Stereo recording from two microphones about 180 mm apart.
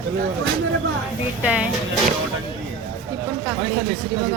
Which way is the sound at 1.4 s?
5° right (ahead or behind).